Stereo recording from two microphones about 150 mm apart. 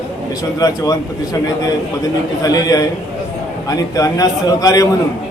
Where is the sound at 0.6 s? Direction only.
25° left (ahead or behind).